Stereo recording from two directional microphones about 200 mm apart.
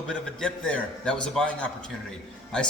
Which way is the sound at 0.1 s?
5° left (ahead or behind).